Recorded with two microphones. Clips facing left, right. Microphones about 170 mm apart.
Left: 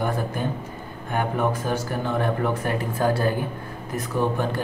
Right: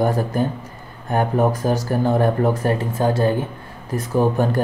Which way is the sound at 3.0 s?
25° right (ahead or behind).